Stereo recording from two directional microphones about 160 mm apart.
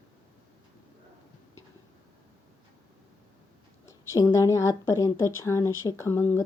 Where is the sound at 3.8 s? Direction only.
20° left (ahead or behind).